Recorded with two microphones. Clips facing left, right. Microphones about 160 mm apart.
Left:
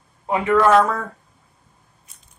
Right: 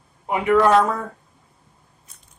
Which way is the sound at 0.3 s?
15° right (ahead or behind).